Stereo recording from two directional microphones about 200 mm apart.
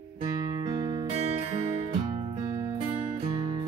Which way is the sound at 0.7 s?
25° right (ahead or behind).